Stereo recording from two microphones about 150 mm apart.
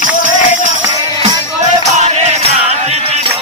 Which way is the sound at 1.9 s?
50° right (ahead or behind).